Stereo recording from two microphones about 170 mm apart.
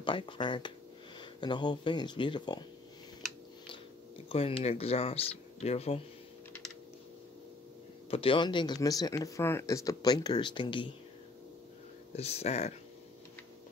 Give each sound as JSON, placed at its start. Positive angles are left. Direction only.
{"t": 0.0, "sound": "speech", "side_deg": 30}
{"t": 4.3, "sound": "speech", "side_deg": 35}
{"t": 8.1, "sound": "speech", "side_deg": 30}
{"t": 12.2, "sound": "speech", "side_deg": 40}